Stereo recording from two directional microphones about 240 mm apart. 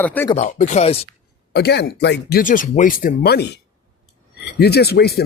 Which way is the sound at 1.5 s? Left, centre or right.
Left.